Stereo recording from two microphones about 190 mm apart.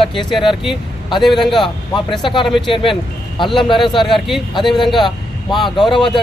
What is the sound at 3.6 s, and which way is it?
Speech, 25° left (ahead or behind).